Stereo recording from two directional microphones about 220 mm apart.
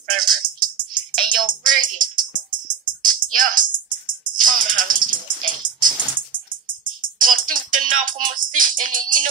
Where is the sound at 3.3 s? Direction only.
40° right (ahead or behind).